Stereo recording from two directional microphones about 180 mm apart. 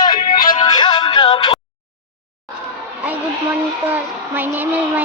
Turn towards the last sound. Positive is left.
turn(degrees=-10)  # may be behind; listen again after turning